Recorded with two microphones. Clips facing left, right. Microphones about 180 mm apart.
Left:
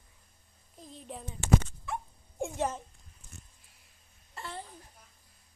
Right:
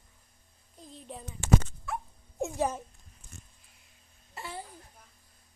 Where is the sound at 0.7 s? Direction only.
Centre (ahead or behind).